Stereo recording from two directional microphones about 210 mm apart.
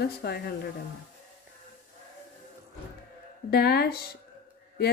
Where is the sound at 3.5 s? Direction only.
50° left (ahead or behind).